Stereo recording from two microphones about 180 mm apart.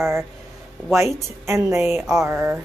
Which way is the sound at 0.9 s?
15° right (ahead or behind).